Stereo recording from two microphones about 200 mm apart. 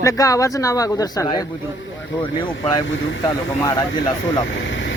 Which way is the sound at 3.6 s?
20° left (ahead or behind).